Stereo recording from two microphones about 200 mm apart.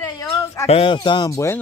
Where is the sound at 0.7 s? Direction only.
25° left (ahead or behind).